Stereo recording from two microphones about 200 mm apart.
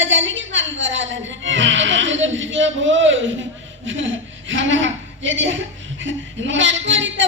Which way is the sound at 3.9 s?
70° right (ahead or behind).